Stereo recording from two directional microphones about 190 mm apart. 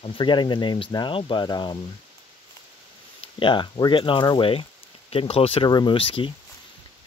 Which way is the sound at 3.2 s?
25° left (ahead or behind).